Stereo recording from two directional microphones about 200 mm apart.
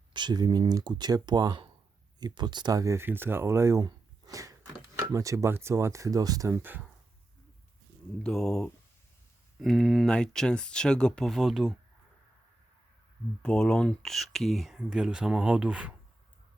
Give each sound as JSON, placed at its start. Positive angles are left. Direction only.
{"t": 0.1, "sound": "speech", "side_deg": -20}
{"t": 8.2, "sound": "speech", "side_deg": 5}
{"t": 13.4, "sound": "speech", "side_deg": 5}